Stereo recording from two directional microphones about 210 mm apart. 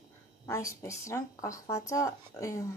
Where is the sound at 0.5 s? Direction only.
15° left (ahead or behind).